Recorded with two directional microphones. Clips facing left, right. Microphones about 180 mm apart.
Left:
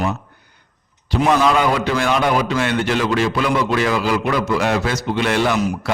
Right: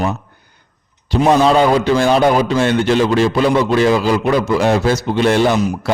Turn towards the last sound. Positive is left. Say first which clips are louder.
# right 4 dB
turn(degrees=-30)  # may be behind; listen again after turning